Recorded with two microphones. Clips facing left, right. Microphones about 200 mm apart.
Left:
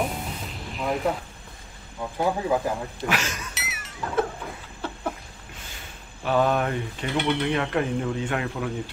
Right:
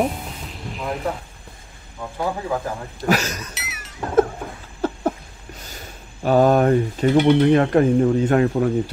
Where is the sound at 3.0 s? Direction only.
40° right (ahead or behind).